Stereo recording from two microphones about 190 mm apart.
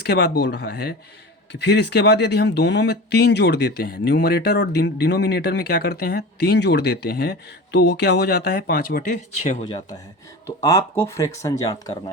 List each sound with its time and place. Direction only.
0.0 s speech: 60° left (ahead or behind); by 9.6 s 35° left (ahead or behind)
10.4 s speech: 15° left (ahead or behind)